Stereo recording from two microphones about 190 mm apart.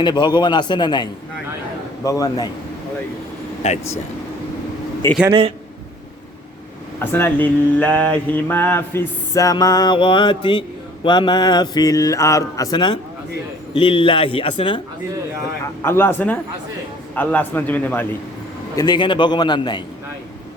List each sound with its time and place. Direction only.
0.0 s speech: 20° left (ahead or behind)
2.0 s speech: 20° left (ahead or behind)
3.6 s speech: 35° left (ahead or behind)
5.0 s mantra: 15° left (ahead or behind)
7.0 s mantra: 10° left (ahead or behind)
11.0 s speech: 25° left (ahead or behind)
15.6 s mantra: 15° left (ahead or behind)
18.8 s speech: 25° left (ahead or behind)